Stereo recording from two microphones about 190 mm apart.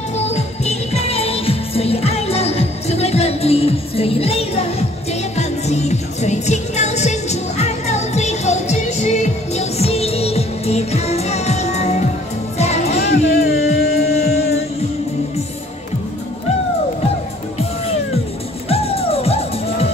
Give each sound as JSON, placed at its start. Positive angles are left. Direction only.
{"t": 0.3, "sound": "music", "side_deg": 35}
{"t": 12.9, "sound": "music", "side_deg": 55}
{"t": 18.7, "sound": "music", "side_deg": 30}